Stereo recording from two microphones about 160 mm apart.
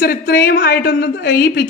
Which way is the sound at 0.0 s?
75° left (ahead or behind).